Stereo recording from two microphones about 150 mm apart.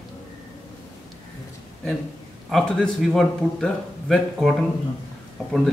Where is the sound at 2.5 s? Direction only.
5° left (ahead or behind).